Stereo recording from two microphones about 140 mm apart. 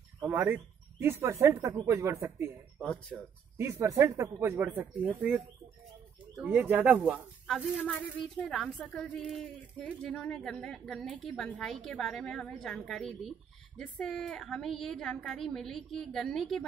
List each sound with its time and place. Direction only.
0.2 s speech: 15° right (ahead or behind)
2.8 s speech: 10° left (ahead or behind)
3.5 s a woman's voice: 20° right (ahead or behind); by 16.6 s 5° left (ahead or behind)